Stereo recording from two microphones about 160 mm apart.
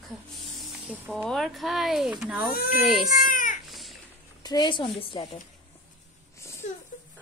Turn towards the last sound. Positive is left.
turn(degrees=15)  # may be behind; listen again after turning